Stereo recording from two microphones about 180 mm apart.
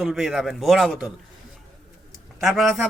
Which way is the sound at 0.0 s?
Centre (ahead or behind).